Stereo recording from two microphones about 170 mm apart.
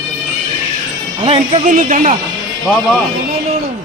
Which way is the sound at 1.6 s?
50° right (ahead or behind).